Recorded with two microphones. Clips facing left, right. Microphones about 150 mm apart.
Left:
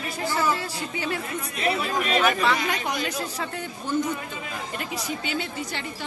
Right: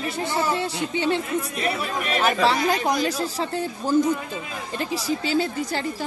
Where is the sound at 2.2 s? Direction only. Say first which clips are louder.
Right 3 dB; 30° right (ahead or behind).